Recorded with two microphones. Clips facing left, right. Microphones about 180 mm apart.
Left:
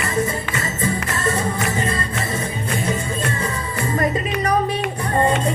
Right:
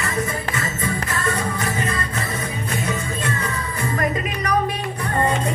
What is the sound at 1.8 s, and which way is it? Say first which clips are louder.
Music: left 2 dB; 30° left (ahead or behind).